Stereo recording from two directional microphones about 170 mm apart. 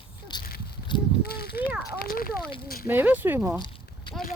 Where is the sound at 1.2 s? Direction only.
65° left (ahead or behind).